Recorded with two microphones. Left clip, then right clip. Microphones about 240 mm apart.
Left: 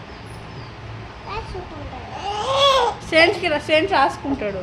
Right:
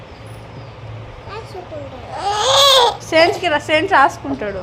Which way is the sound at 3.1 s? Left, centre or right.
Centre.